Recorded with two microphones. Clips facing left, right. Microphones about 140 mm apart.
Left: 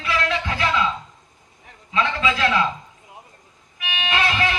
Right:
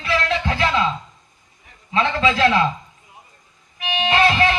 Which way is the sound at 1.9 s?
30° right (ahead or behind).